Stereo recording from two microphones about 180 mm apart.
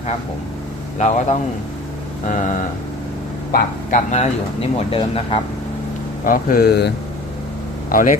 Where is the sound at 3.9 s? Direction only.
40° left (ahead or behind).